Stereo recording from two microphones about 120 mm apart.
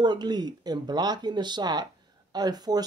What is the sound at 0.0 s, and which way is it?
Speech, 35° right (ahead or behind).